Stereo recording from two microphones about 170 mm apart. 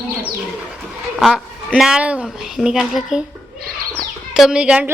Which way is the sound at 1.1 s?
Centre (ahead or behind).